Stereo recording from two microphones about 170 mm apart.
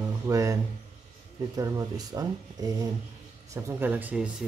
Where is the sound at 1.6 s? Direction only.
20° right (ahead or behind).